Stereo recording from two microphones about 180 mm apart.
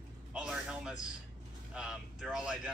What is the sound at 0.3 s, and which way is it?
Music, 5° right (ahead or behind).